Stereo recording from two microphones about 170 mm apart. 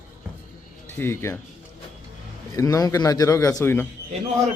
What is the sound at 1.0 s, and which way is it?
Speech, 15° left (ahead or behind).